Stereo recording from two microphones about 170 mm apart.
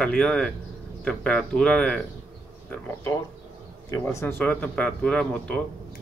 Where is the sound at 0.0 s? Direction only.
5° left (ahead or behind).